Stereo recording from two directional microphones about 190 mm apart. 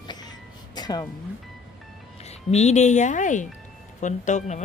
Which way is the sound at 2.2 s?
35° left (ahead or behind).